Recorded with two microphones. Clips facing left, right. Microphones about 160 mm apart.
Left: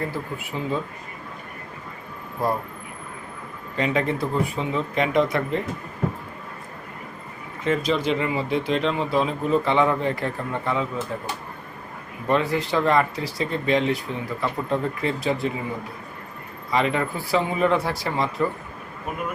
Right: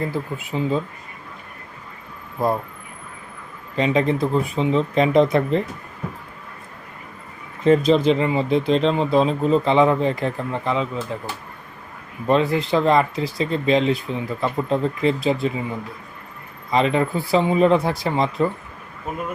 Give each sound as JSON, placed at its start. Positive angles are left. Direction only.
{"t": 0.5, "sound": "speech", "side_deg": -30}
{"t": 3.8, "sound": "speech", "side_deg": -25}
{"t": 7.6, "sound": "speech", "side_deg": -30}
{"t": 12.3, "sound": "speech", "side_deg": -25}
{"t": 16.7, "sound": "speech", "side_deg": -25}